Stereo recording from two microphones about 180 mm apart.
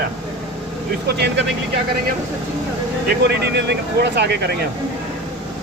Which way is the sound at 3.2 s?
70° right (ahead or behind).